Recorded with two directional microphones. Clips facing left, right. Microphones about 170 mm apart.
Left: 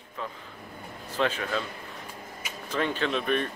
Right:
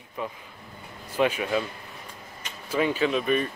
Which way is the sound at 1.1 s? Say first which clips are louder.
Right 4 dB; 10° right (ahead or behind).